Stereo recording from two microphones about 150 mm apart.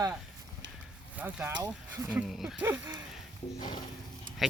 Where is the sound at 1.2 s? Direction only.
10° right (ahead or behind).